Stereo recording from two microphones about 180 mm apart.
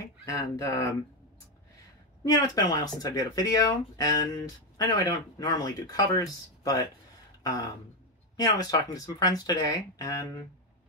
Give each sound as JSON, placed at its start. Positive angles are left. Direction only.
{"t": 0.2, "sound": "speech", "side_deg": 20}
{"t": 2.3, "sound": "speech", "side_deg": 20}
{"t": 8.4, "sound": "speech", "side_deg": 20}